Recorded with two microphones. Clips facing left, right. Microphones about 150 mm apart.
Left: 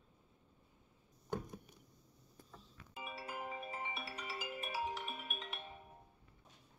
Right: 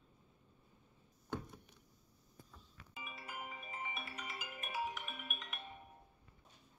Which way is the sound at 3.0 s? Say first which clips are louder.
Left 4 dB; 35° left (ahead or behind).